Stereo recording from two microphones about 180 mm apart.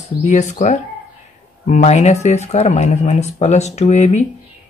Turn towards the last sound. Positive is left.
turn(degrees=40)  # may be behind; listen again after turning